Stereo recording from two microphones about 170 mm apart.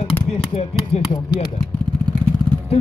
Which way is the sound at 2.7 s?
35° left (ahead or behind).